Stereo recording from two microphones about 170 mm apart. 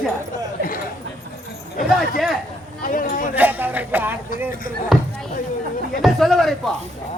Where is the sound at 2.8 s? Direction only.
55° left (ahead or behind).